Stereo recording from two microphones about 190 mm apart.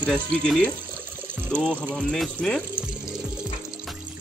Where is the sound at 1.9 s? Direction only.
5° left (ahead or behind).